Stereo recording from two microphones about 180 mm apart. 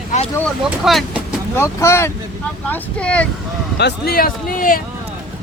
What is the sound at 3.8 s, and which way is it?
Speech, 65° left (ahead or behind).